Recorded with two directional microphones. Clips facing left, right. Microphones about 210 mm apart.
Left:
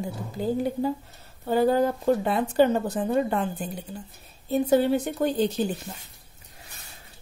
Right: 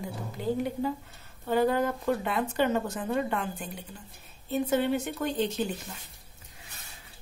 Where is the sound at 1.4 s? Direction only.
35° left (ahead or behind).